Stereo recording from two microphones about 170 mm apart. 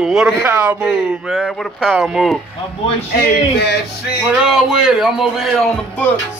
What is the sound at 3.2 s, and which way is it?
Speech, 65° left (ahead or behind).